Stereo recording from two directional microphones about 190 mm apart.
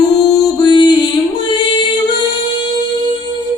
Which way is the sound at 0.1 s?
20° left (ahead or behind).